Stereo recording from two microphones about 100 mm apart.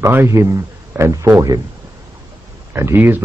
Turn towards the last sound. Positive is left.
turn(degrees=-20)  # may be behind; listen again after turning